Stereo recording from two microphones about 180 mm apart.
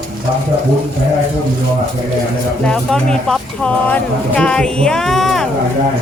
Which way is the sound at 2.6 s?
5° left (ahead or behind).